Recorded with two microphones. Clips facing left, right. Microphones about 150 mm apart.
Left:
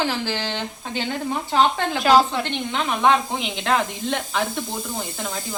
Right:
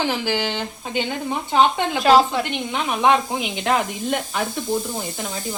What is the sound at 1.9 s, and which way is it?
Speech, centre (ahead or behind).